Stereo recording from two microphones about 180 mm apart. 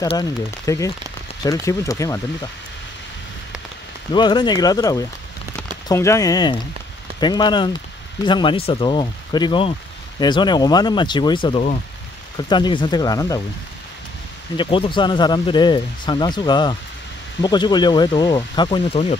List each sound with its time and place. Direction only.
0.1 s speech: 20° left (ahead or behind)
4.1 s speech: 25° left (ahead or behind)
14.6 s speech: 30° left (ahead or behind)